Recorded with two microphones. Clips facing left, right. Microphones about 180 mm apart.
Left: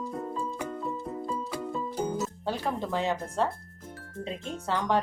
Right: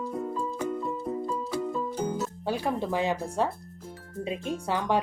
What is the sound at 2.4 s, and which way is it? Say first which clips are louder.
Speech: right 5 dB; 10° right (ahead or behind).